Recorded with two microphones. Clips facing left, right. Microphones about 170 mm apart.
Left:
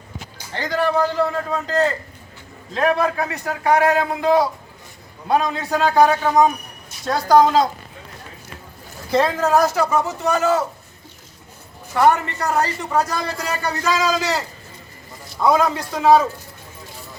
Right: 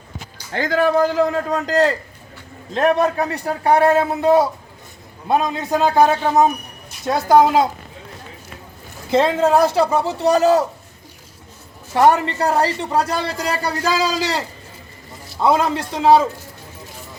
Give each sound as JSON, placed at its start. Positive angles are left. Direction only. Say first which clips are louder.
{"t": 0.5, "sound": "a man's voice", "louder": "right 3 dB", "side_deg": -50}
{"t": 1.5, "sound": "a man's voice", "louder": "right 3 dB", "side_deg": -80}
{"t": 3.0, "sound": "speech", "louder": "right 3 dB", "side_deg": -35}
{"t": 5.3, "sound": "a man's voice", "louder": "right 1 dB", "side_deg": -20}
{"t": 7.4, "sound": "speech", "louder": "right 1 dB", "side_deg": -5}
{"t": 9.0, "sound": "speech", "louder": "right 3 dB", "side_deg": -20}
{"t": 11.9, "sound": "a man's voice", "louder": "right 2 dB", "side_deg": -30}